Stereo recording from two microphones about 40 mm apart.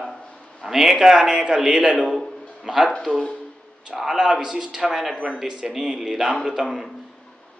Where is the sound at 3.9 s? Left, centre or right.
Centre.